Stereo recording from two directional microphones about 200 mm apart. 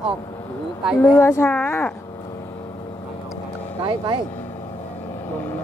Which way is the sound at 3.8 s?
20° right (ahead or behind).